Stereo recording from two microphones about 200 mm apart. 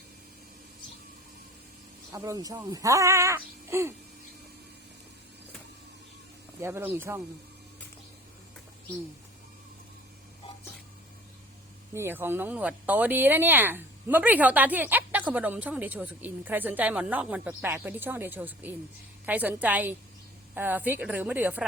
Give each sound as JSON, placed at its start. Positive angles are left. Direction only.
{"t": 2.1, "sound": "speech", "side_deg": -15}
{"t": 6.6, "sound": "speech", "side_deg": -10}
{"t": 11.9, "sound": "speech", "side_deg": -10}